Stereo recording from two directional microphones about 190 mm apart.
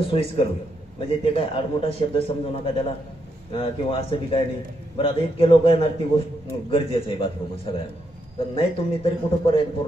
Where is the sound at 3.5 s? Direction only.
30° left (ahead or behind).